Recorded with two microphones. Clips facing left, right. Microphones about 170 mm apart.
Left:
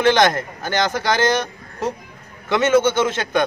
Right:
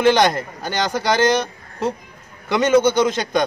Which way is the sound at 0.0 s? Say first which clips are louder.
Even; 15° right (ahead or behind).